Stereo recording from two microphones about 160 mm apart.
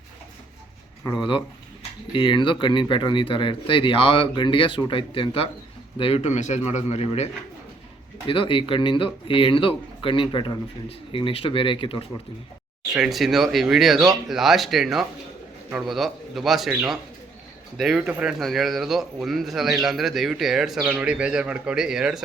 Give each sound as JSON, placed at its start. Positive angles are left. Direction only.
{"t": 1.0, "sound": "a man's voice", "side_deg": 30}
{"t": 8.3, "sound": "speech", "side_deg": 35}
{"t": 12.9, "sound": "speech", "side_deg": -5}